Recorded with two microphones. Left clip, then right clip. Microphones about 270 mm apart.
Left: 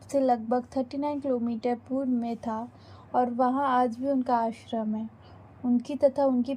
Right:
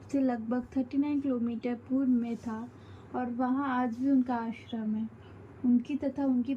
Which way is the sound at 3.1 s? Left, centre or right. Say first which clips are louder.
Left 8 dB; centre.